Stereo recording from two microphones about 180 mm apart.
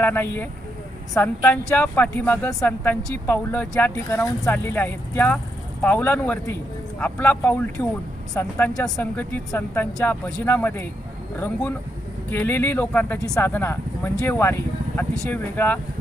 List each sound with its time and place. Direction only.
0.0 s speech: 10° left (ahead or behind)
12.3 s speech: 10° left (ahead or behind)